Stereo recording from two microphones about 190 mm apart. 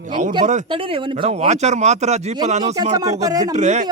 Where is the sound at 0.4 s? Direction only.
35° right (ahead or behind).